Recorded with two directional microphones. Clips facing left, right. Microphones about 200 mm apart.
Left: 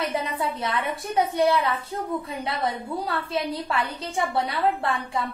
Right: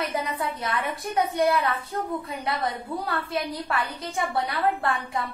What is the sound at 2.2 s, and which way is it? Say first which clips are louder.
Speech: left 1 dB; 25° left (ahead or behind).